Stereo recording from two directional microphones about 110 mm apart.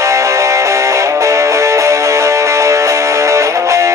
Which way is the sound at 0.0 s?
30° right (ahead or behind).